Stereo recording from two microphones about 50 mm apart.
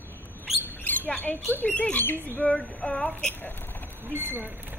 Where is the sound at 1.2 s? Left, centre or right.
Left.